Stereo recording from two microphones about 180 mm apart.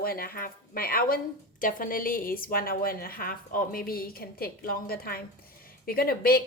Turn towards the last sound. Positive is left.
turn(degrees=55)  # may be behind; listen again after turning